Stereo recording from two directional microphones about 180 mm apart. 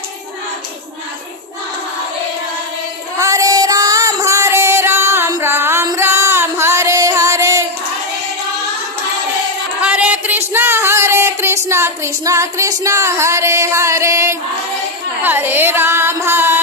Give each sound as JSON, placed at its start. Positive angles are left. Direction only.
{"t": 3.2, "sound": "music", "side_deg": -20}
{"t": 9.8, "sound": "a sound", "side_deg": -5}
{"t": 15.2, "sound": "carnatic music", "side_deg": -10}